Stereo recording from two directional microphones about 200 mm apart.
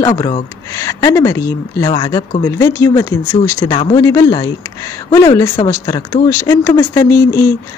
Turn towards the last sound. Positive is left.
turn(degrees=15)  # may be behind; listen again after turning